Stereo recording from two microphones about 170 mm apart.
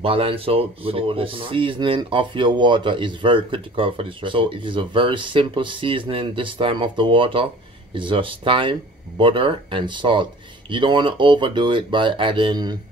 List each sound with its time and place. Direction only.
0.0 s speech: 35° right (ahead or behind)